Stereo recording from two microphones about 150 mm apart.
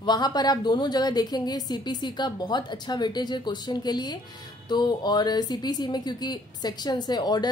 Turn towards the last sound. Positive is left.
turn(degrees=25)  # may be behind; listen again after turning